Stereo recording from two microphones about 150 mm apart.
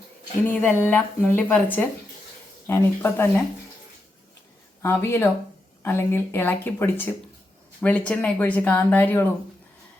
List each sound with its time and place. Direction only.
0.6 s speech: 15° left (ahead or behind)
4.8 s speech: 15° left (ahead or behind)